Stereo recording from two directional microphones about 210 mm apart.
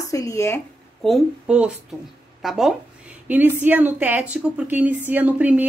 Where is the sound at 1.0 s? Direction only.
Centre (ahead or behind).